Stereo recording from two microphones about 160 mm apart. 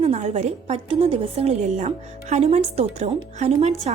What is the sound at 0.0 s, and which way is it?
A woman's voice, 40° right (ahead or behind).